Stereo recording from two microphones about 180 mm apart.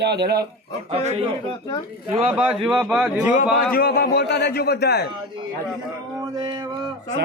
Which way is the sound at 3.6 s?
55° left (ahead or behind).